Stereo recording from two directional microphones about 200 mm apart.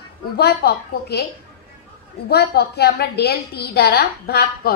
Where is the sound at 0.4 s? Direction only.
55° left (ahead or behind).